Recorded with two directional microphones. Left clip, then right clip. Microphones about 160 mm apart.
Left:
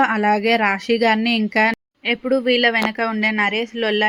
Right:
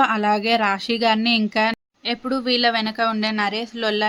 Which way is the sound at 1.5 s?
20° left (ahead or behind).